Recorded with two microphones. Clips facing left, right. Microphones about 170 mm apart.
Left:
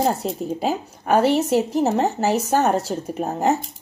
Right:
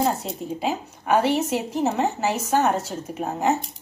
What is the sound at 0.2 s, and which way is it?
A woman's voice, 40° left (ahead or behind).